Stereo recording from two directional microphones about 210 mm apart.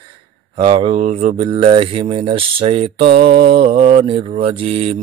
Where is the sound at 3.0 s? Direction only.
45° right (ahead or behind).